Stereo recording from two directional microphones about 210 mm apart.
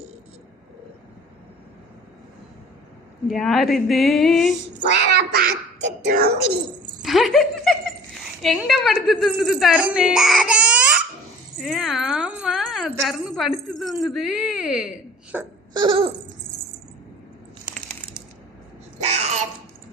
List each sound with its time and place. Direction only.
3.2 s speech: centre (ahead or behind)
5.1 s a child's voice: 45° right (ahead or behind)
7.0 s speech: centre (ahead or behind)
15.7 s laughter: 20° right (ahead or behind)
18.9 s a sound: 30° right (ahead or behind)